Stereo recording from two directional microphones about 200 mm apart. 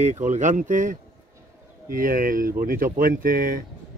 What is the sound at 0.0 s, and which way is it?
Speech, 35° right (ahead or behind).